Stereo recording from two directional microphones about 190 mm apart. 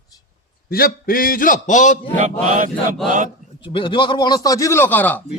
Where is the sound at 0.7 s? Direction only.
50° left (ahead or behind).